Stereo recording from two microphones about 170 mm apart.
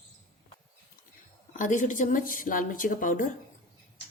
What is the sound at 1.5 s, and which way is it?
A woman's voice, 50° left (ahead or behind).